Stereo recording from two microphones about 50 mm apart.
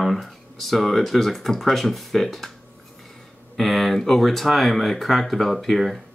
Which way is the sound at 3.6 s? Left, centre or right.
Centre.